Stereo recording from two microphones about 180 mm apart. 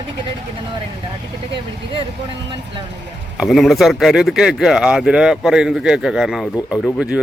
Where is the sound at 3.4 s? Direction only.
Centre (ahead or behind).